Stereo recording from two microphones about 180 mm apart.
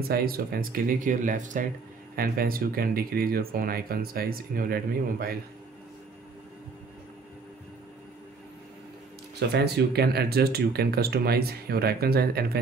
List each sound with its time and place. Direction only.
0.1 s speech: 55° right (ahead or behind)
9.5 s speech: 65° right (ahead or behind)